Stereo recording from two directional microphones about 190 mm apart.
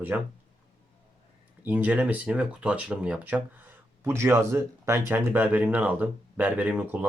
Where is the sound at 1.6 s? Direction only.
10° right (ahead or behind).